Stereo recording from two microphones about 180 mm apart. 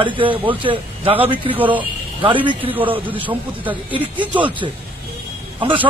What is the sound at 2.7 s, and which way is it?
Speech, 10° right (ahead or behind).